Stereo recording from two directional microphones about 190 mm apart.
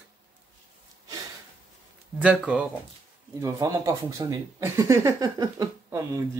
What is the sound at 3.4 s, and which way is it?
Speech, 15° right (ahead or behind).